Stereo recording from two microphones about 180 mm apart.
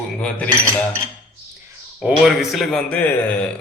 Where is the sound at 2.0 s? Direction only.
5° right (ahead or behind).